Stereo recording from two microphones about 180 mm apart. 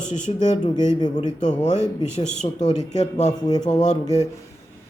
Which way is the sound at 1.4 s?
40° left (ahead or behind).